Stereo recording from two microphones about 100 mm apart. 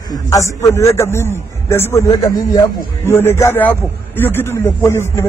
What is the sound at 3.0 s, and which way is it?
Speech, 25° left (ahead or behind).